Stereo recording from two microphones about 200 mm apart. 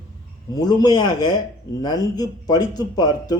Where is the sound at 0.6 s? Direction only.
20° left (ahead or behind).